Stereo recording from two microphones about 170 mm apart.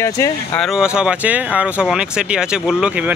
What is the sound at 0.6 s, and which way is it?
Speech, 5° right (ahead or behind).